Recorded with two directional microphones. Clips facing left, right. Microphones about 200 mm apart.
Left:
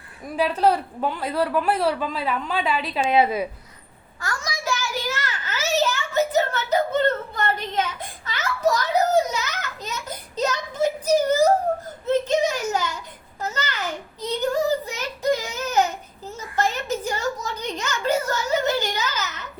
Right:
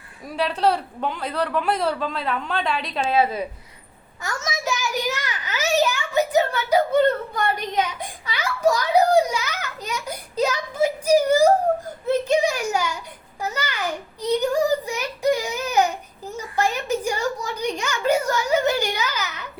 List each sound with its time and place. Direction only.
0.3 s a man's voice: 5° left (ahead or behind)
3.1 s a woman's voice: 15° left (ahead or behind)
4.2 s a sound: 20° right (ahead or behind)
17.4 s a child's voice: 10° right (ahead or behind)